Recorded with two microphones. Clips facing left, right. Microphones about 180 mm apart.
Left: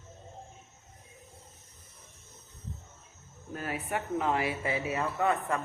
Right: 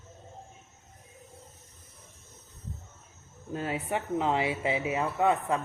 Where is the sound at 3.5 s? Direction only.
25° right (ahead or behind).